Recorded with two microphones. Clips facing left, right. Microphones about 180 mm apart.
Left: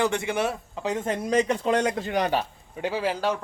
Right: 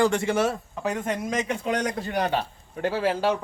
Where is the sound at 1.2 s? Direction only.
35° left (ahead or behind).